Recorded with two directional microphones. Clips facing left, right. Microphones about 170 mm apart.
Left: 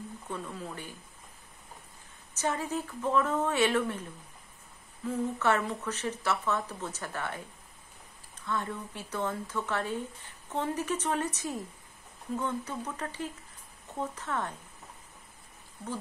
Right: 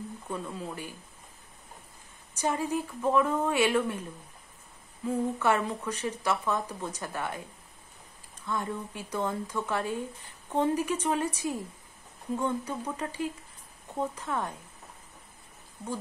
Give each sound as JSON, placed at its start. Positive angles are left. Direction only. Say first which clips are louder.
{"t": 0.3, "sound": "speech", "louder": "right 2 dB", "side_deg": -10}
{"t": 2.3, "sound": "speech", "louder": "right 3 dB", "side_deg": -15}
{"t": 5.0, "sound": "speech", "louder": "right 2 dB", "side_deg": -15}
{"t": 8.5, "sound": "speech", "louder": "right 1 dB", "side_deg": -10}